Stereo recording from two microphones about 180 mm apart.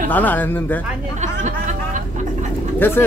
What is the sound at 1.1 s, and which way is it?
Speech, 40° right (ahead or behind).